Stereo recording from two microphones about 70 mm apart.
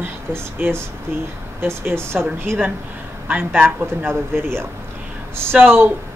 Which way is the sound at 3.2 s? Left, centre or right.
Right.